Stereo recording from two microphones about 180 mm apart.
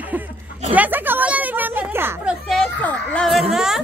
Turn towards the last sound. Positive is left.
turn(degrees=0)  # may be behind; listen again after turning